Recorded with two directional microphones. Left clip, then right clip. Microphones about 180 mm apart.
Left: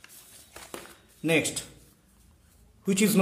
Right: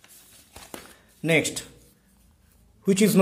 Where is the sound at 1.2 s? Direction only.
25° right (ahead or behind).